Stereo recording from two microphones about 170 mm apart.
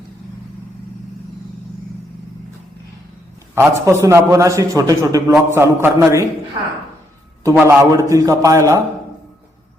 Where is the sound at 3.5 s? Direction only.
15° right (ahead or behind).